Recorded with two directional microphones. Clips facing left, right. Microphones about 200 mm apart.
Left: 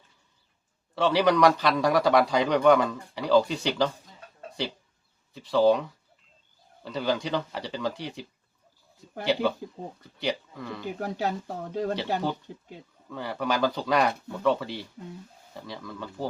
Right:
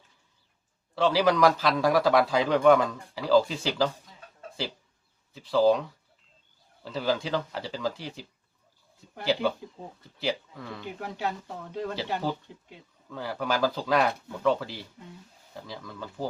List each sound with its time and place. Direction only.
0.9 s a man's voice: centre (ahead or behind)
6.8 s a man's voice: centre (ahead or behind)
9.2 s a man's voice: centre (ahead or behind)
11.0 s speech: 40° left (ahead or behind)
13.1 s a man's voice: centre (ahead or behind)